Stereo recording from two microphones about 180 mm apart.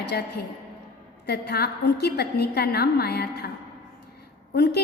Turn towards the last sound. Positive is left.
turn(degrees=65)  # may be behind; listen again after turning